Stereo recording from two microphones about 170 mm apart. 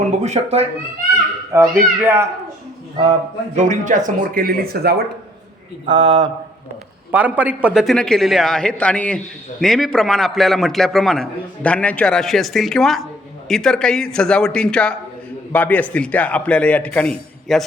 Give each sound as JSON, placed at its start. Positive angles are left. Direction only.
{"t": 0.2, "sound": "speech", "side_deg": -40}
{"t": 1.5, "sound": "speech", "side_deg": -15}
{"t": 3.0, "sound": "speech", "side_deg": -30}
{"t": 3.6, "sound": "speech", "side_deg": -45}
{"t": 5.9, "sound": "speech", "side_deg": -30}
{"t": 7.1, "sound": "a man's voice", "side_deg": -10}